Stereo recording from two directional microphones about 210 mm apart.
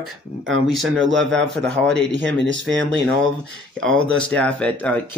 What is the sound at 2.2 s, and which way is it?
Speech, 60° right (ahead or behind).